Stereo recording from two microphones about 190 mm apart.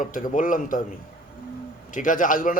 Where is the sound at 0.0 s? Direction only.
45° left (ahead or behind).